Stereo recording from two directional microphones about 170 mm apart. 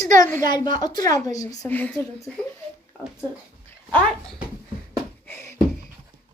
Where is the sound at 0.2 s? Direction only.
15° left (ahead or behind).